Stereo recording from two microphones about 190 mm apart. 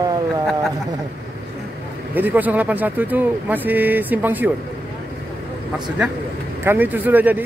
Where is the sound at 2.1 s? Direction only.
10° right (ahead or behind).